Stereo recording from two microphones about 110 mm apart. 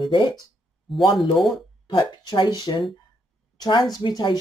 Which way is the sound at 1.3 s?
5° left (ahead or behind).